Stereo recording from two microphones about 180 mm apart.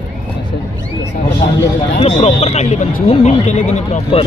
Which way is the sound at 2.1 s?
30° left (ahead or behind).